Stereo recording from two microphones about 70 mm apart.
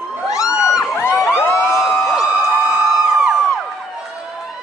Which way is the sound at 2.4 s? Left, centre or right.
Centre.